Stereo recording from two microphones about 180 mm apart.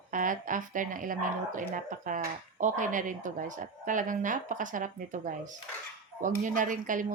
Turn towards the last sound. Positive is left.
turn(degrees=-45)  # may be behind; listen again after turning